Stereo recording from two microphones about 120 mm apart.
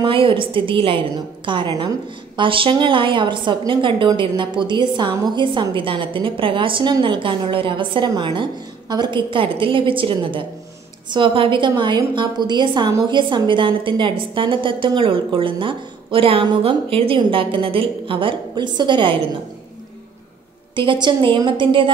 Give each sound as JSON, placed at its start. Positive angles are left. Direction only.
{"t": 0.0, "sound": "a woman's voice", "side_deg": -45}
{"t": 20.7, "sound": "a woman's voice", "side_deg": -45}